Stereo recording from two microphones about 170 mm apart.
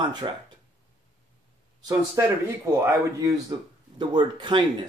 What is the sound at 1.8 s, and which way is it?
A man's voice, 15° right (ahead or behind).